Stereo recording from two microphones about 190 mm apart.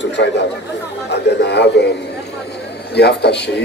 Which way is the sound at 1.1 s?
65° left (ahead or behind).